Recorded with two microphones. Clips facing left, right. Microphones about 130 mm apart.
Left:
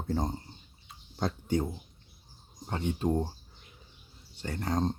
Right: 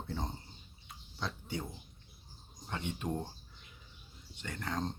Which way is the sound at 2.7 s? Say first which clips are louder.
Left 8 dB; 35° left (ahead or behind).